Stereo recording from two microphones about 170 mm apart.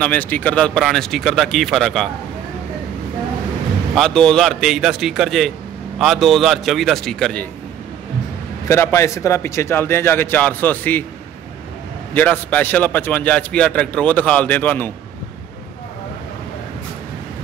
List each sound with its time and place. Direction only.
0.0 s speech: 10° left (ahead or behind)
3.9 s speech: 5° left (ahead or behind)
8.6 s a man's voice: 15° left (ahead or behind)
12.1 s a man's voice: 10° left (ahead or behind)